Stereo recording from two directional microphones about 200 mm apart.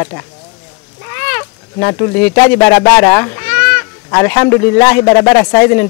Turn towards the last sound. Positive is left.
turn(degrees=15)  # may be behind; listen again after turning